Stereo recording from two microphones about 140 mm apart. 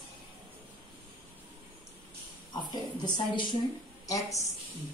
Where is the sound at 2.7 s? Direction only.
30° left (ahead or behind).